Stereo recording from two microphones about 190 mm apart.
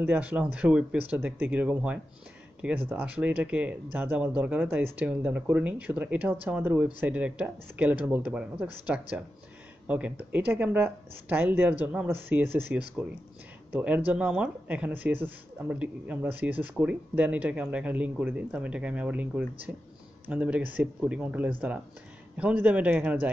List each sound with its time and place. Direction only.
0.0 s speech: 10° right (ahead or behind)